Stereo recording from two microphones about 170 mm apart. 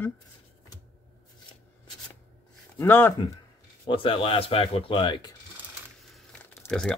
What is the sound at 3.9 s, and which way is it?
Speech, 30° left (ahead or behind).